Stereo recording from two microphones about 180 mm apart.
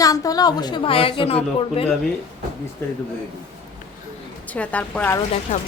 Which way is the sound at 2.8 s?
15° left (ahead or behind).